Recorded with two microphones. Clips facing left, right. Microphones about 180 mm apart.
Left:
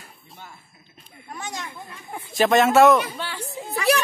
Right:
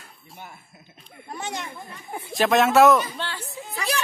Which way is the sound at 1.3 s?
25° right (ahead or behind).